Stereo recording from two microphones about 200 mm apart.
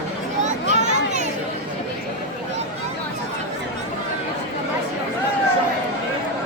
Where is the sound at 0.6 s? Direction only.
35° right (ahead or behind).